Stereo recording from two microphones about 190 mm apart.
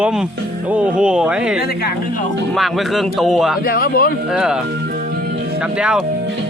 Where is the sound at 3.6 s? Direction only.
50° left (ahead or behind).